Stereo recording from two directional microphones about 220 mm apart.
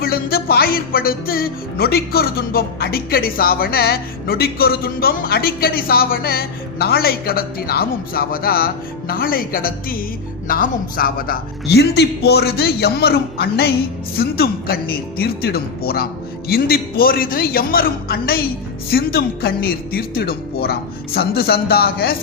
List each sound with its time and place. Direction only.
0.0 s a man's voice: 45° left (ahead or behind)